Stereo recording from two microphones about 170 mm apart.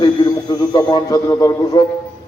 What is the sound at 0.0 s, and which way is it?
A man's voice, 25° left (ahead or behind).